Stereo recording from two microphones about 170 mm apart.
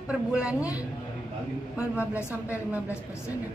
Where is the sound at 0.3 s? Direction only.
5° right (ahead or behind).